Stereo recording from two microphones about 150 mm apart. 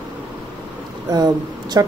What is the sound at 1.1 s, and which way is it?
Speech, 25° right (ahead or behind).